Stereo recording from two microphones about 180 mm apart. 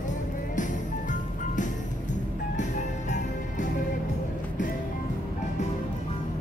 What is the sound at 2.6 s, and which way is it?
Music, 45° left (ahead or behind).